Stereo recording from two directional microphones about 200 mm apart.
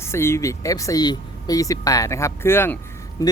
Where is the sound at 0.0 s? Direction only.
15° left (ahead or behind).